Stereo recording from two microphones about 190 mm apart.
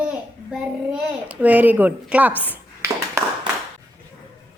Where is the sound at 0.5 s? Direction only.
5° right (ahead or behind).